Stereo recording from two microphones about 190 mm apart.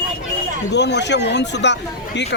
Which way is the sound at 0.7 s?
65° left (ahead or behind).